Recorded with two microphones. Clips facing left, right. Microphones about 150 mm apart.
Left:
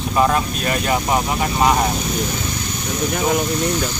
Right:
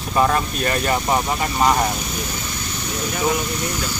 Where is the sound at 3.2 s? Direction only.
50° left (ahead or behind).